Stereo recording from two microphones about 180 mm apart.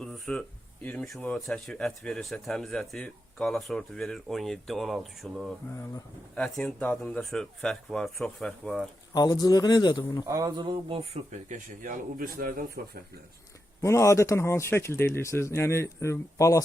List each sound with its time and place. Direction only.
0.0 s speech: 5° left (ahead or behind)
9.1 s a man's voice: 20° left (ahead or behind)
10.2 s a man's voice: 20° right (ahead or behind); by 13.0 s 55° right (ahead or behind)
13.8 s speech: 15° left (ahead or behind)